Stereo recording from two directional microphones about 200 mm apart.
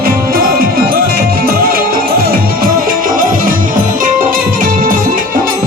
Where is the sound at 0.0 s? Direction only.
50° right (ahead or behind).